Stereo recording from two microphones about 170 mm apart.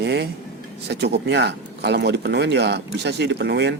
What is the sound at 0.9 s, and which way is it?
Speech, 85° right.